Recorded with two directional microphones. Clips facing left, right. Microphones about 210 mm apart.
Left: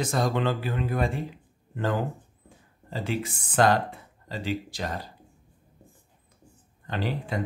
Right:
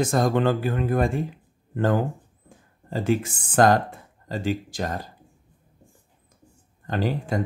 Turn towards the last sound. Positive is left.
turn(degrees=-45)  # may be behind; listen again after turning